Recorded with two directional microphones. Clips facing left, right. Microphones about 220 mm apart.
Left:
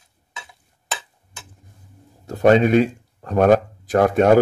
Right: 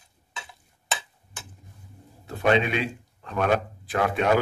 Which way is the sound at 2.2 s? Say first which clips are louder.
Left 8 dB; 40° left (ahead or behind).